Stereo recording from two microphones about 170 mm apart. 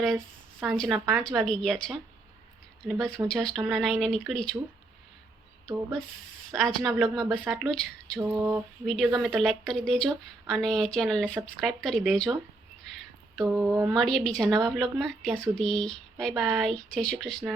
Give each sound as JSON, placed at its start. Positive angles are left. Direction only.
{"t": 0.7, "sound": "a woman's voice", "side_deg": 0}
{"t": 6.5, "sound": "a woman's voice", "side_deg": 0}
{"t": 8.2, "sound": "a sound", "side_deg": -10}
{"t": 8.9, "sound": "a woman's voice", "side_deg": 0}